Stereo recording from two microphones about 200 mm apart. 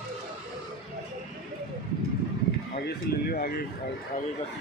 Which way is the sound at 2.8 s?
50° left (ahead or behind).